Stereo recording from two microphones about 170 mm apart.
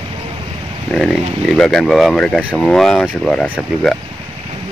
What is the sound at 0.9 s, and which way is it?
Speech, centre (ahead or behind).